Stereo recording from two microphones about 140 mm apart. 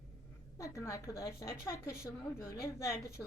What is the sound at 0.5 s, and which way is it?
A woman's voice, 20° left (ahead or behind).